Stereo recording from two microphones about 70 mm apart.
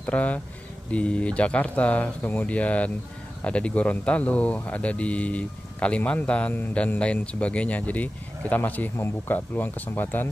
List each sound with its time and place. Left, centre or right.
0.0 s speech: left